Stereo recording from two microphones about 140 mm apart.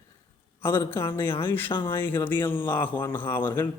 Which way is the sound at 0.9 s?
15° left (ahead or behind).